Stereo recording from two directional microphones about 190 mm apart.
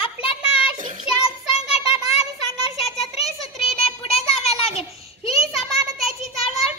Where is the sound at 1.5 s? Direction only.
35° left (ahead or behind).